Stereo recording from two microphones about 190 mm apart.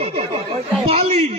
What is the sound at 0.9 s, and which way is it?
Speech, 30° right (ahead or behind).